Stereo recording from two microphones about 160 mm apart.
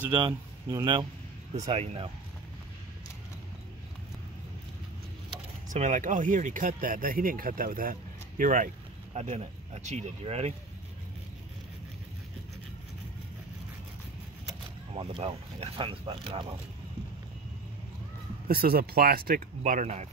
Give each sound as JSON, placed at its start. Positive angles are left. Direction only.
{"t": 0.1, "sound": "speech", "side_deg": -25}
{"t": 1.7, "sound": "speech", "side_deg": -40}
{"t": 5.7, "sound": "speech", "side_deg": -50}
{"t": 9.1, "sound": "speech", "side_deg": -45}
{"t": 15.0, "sound": "speech", "side_deg": -40}
{"t": 18.5, "sound": "speech", "side_deg": -70}